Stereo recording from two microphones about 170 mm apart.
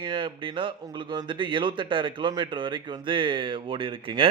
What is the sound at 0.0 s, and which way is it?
A man's voice, 30° right (ahead or behind).